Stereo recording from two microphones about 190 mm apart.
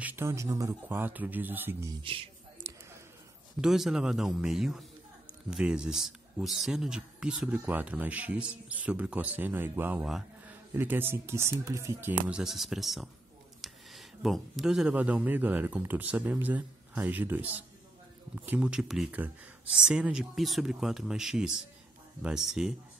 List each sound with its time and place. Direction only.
0.0 s speech: 10° right (ahead or behind)
2.6 s a sound: 15° right (ahead or behind)
3.6 s speech: centre (ahead or behind)